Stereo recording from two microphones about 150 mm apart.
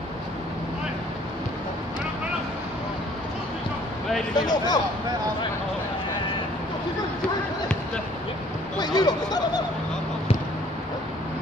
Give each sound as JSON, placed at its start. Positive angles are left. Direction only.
{"t": 4.4, "sound": "speech", "side_deg": 25}
{"t": 8.7, "sound": "speech", "side_deg": 25}